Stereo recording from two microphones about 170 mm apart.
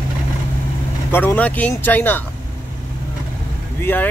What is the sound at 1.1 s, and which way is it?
Speech, 10° left (ahead or behind).